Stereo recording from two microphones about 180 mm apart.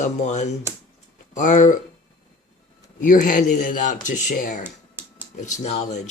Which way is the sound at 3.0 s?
50° left (ahead or behind).